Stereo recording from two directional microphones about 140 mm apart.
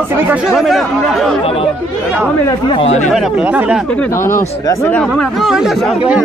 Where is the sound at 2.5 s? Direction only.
35° left (ahead or behind).